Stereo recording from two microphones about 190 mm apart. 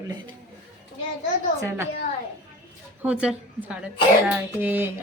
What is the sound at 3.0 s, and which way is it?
A woman's voice, 5° right (ahead or behind).